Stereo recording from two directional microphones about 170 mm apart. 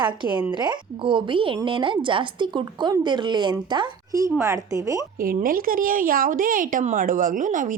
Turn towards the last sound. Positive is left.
turn(degrees=-50)  # may be behind; listen again after turning